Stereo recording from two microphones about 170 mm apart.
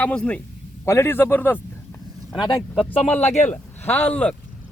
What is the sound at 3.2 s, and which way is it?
Speech, 40° left (ahead or behind).